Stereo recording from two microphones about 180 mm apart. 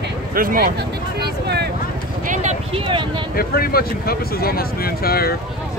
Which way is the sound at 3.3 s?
55° left (ahead or behind).